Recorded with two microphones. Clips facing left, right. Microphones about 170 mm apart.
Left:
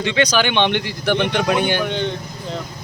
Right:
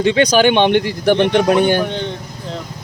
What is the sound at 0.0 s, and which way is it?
Speech, 45° right (ahead or behind).